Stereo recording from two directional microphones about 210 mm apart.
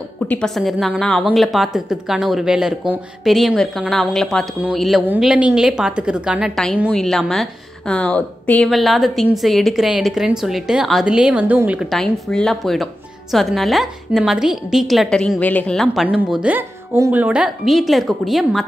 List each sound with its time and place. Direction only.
0.3 s speech: centre (ahead or behind)